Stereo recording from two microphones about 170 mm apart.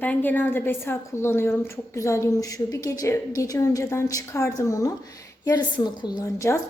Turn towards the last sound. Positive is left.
turn(degrees=15)  # may be behind; listen again after turning